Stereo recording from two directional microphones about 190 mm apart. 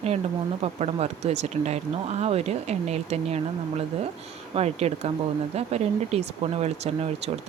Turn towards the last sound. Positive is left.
turn(degrees=-35)  # may be behind; listen again after turning